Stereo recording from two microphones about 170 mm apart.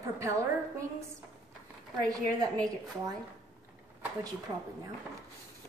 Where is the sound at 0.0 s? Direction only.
20° right (ahead or behind).